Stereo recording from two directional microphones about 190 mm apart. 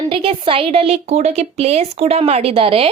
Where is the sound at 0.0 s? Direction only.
30° right (ahead or behind).